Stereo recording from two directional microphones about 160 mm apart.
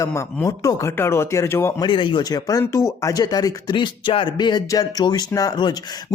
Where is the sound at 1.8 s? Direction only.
30° left (ahead or behind).